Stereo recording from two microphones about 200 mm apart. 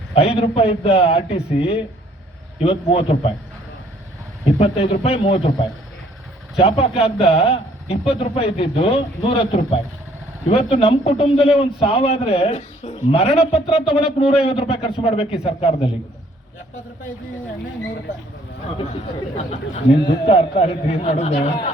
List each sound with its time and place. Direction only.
0.1 s a man's voice: 30° left (ahead or behind)
4.4 s a man's voice: 30° left (ahead or behind)
6.6 s a man's voice: 30° left (ahead or behind)
19.5 s a man's voice: 30° left (ahead or behind)